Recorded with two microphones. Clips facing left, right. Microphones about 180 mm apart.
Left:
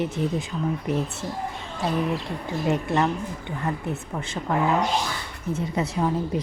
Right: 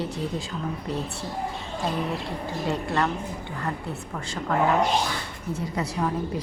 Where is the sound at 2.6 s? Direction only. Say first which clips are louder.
Left 3 dB; 20° left (ahead or behind).